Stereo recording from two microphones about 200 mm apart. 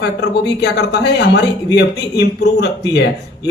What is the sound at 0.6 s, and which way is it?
Speech, 55° left (ahead or behind).